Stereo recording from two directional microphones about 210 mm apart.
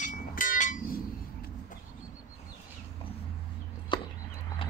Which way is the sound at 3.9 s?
20° left (ahead or behind).